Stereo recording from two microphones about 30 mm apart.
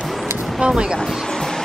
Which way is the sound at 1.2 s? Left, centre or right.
Centre.